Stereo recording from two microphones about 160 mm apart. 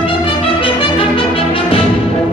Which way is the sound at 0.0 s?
35° left (ahead or behind).